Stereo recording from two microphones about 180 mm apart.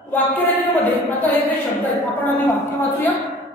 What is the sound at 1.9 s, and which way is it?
A woman's voice, 10° left (ahead or behind).